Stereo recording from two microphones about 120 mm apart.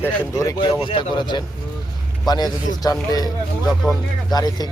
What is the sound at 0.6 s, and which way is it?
Speech, 40° left (ahead or behind).